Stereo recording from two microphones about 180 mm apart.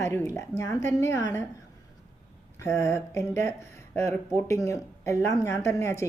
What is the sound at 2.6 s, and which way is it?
Speech, 15° left (ahead or behind).